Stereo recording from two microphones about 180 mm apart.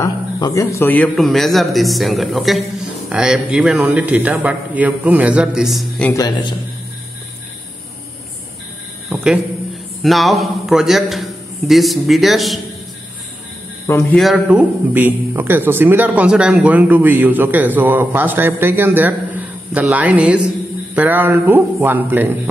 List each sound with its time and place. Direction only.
0.0 s a man's voice: 15° left (ahead or behind)
6.1 s a man's voice: 20° left (ahead or behind)
9.1 s a man's voice: 5° right (ahead or behind)
14.1 s speech: centre (ahead or behind)